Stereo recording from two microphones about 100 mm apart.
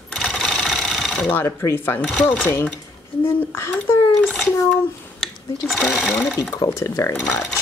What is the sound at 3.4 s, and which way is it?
Speech, 20° left (ahead or behind).